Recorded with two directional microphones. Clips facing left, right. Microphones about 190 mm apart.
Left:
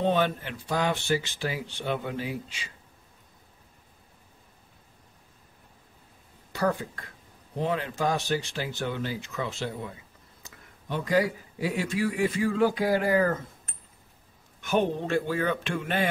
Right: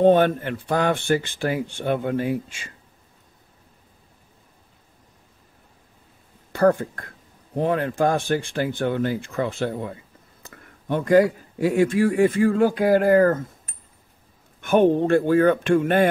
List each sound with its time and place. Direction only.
0.0 s speech: 55° right (ahead or behind)
6.5 s speech: 50° right (ahead or behind)
14.6 s speech: 50° right (ahead or behind)